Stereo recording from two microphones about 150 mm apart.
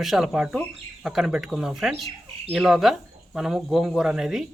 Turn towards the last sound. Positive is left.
turn(degrees=-5)  # may be behind; listen again after turning